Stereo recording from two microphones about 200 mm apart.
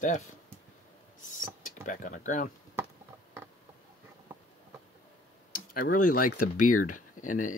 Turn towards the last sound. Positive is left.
turn(degrees=40)  # may be behind; listen again after turning